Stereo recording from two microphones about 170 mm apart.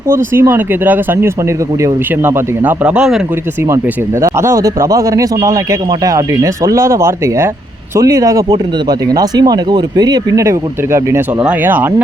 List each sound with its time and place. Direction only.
0.1 s speech: 15° right (ahead or behind)
4.2 s speech: 15° right (ahead or behind)